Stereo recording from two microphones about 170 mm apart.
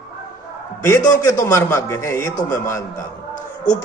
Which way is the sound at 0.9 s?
15° left (ahead or behind).